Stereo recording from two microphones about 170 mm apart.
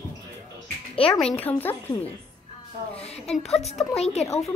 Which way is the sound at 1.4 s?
10° left (ahead or behind).